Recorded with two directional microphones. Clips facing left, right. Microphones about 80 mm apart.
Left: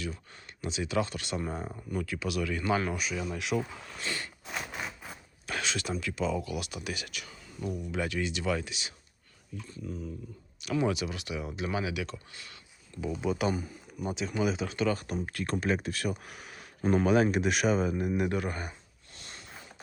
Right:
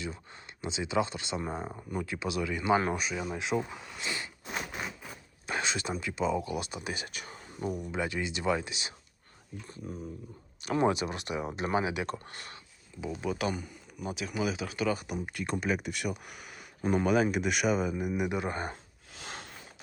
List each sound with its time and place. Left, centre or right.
0.6 s speech: right
2.8 s speech: right
3.6 s speech: centre
4.0 s a sound: centre
6.0 s speech: right
7.9 s speech: right
9.6 s speech: right
12.0 s speech: right
13.1 s speech: centre
18.3 s speech: right
19.2 s sniff: right